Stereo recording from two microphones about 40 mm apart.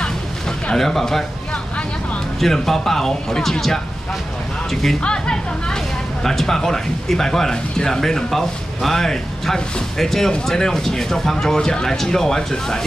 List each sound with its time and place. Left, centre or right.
0.7 s speech: centre
2.4 s speech: centre
5.0 s speech: left